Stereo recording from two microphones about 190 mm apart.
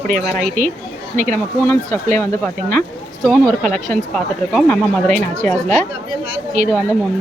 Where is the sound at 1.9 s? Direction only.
40° right (ahead or behind).